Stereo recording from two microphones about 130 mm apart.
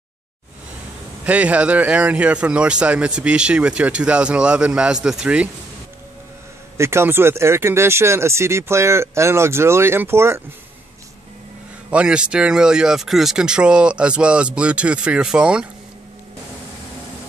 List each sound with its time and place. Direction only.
1.2 s speech: 10° right (ahead or behind)
6.8 s speech: 20° right (ahead or behind)
11.9 s speech: 10° right (ahead or behind)